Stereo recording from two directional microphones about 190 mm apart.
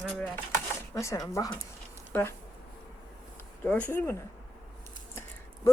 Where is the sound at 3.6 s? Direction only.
10° left (ahead or behind).